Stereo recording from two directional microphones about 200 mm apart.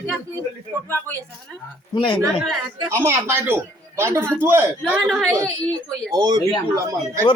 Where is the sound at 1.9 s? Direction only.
25° left (ahead or behind).